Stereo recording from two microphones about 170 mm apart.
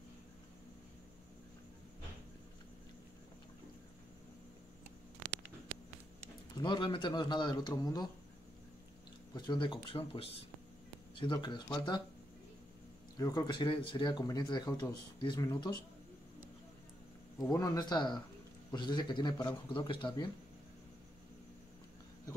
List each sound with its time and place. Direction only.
6.5 s speech: 25° left (ahead or behind)
9.3 s speech: 25° left (ahead or behind)
13.2 s speech: 20° left (ahead or behind)
17.4 s speech: 20° left (ahead or behind)